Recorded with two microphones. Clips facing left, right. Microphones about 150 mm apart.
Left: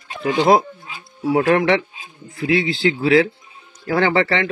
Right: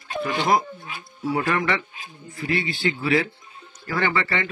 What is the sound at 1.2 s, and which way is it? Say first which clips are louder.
Speech: left 8 dB; 70° left (ahead or behind).